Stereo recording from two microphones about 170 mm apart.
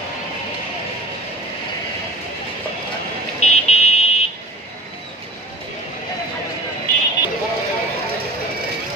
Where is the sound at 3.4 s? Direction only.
40° left (ahead or behind).